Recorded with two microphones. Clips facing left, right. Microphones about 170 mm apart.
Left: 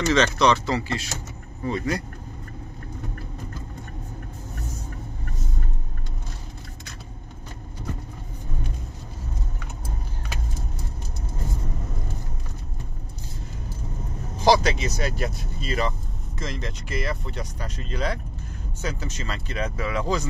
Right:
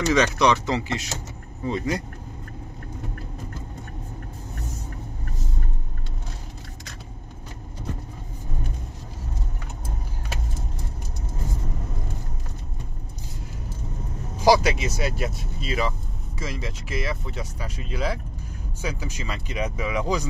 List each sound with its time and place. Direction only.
0.0 s speech: 15° right (ahead or behind)
14.4 s speech: 10° right (ahead or behind)